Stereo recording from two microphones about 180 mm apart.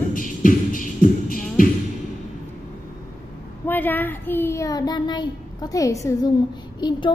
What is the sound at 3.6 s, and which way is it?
Child singing, 10° left (ahead or behind).